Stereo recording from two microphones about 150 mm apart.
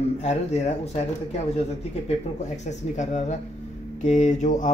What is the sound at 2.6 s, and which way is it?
Speech, 50° left (ahead or behind).